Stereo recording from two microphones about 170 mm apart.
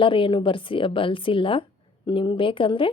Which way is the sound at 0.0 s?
30° left (ahead or behind).